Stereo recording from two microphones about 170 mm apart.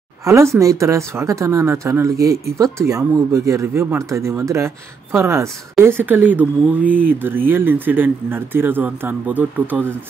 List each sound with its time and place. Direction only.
0.2 s speech: 15° right (ahead or behind)